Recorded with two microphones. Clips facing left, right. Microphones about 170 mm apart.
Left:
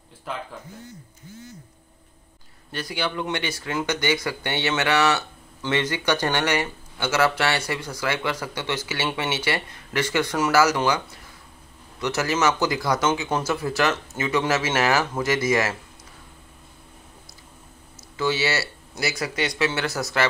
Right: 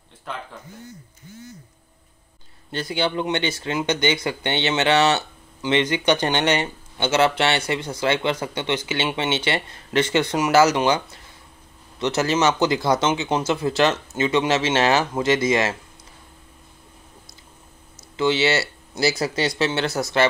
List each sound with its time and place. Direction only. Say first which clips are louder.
0.3 s a man's voice: left 1 dB; 5° left (ahead or behind)
2.7 s speech: right 4 dB; 25° right (ahead or behind)
12.0 s speech: right 3 dB; 25° right (ahead or behind)
18.1 s speech: right 4 dB; 25° right (ahead or behind)